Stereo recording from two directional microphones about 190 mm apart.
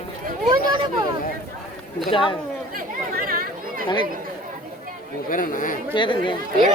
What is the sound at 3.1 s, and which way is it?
Chatter, 50° right (ahead or behind).